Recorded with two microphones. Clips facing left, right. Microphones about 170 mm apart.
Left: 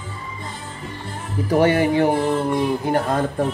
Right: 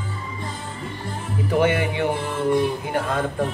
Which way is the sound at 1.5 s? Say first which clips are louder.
Left 4 dB; 40° left (ahead or behind).